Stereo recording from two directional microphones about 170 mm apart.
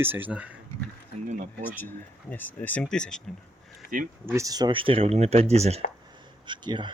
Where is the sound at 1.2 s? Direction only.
45° right (ahead or behind).